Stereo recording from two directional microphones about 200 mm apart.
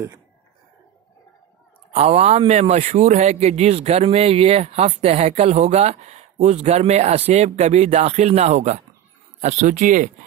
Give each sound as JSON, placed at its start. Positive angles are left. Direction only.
{"t": 2.0, "sound": "a man's voice", "side_deg": -30}